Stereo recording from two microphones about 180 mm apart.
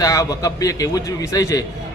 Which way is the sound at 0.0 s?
20° left (ahead or behind).